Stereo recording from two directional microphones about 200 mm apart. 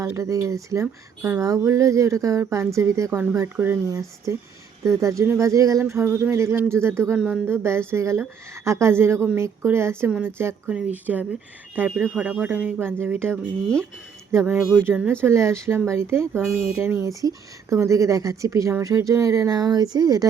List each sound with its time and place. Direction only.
0.0 s speech: 15° right (ahead or behind)